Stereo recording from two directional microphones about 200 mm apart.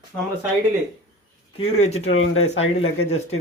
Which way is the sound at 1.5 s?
30° left (ahead or behind).